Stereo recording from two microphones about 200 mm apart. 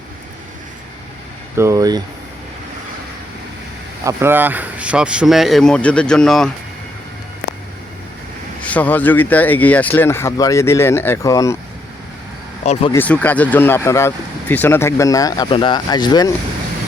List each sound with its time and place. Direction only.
1.5 s speech: 15° right (ahead or behind)
4.0 s speech: 10° right (ahead or behind)
8.6 s speech: 5° left (ahead or behind)
12.6 s speech: 30° left (ahead or behind)
12.9 s speech: 10° left (ahead or behind)